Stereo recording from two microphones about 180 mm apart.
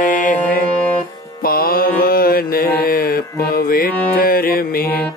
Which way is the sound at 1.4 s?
55° left (ahead or behind).